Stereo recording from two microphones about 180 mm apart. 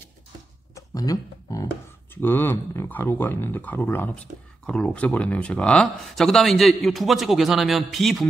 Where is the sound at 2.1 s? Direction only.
10° left (ahead or behind).